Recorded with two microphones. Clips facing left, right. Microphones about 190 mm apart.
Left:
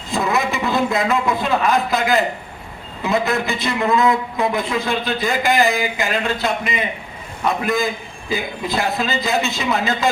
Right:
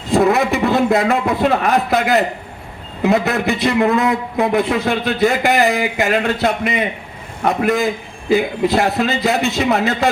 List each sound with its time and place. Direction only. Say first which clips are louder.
0.1 s speech: right 6 dB; 70° right (ahead or behind)